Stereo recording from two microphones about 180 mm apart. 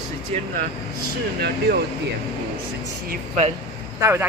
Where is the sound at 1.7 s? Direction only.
60° right (ahead or behind).